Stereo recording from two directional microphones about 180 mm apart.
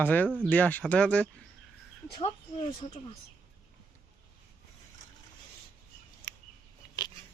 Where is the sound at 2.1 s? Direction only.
30° left (ahead or behind).